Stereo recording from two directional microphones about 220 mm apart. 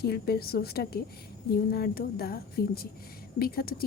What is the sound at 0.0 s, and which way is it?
A woman's voice, 45° left (ahead or behind).